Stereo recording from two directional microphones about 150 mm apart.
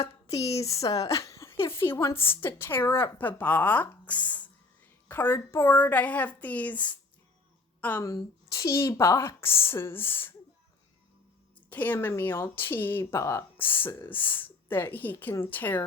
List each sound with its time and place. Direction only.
0.3 s speech: 45° left (ahead or behind)
0.6 s speech: 20° left (ahead or behind)
0.9 s a sound: 20° left (ahead or behind)
1.6 s a woman's voice: 15° left (ahead or behind)
8.0 s speech: 20° left (ahead or behind)
11.7 s speech: 10° left (ahead or behind)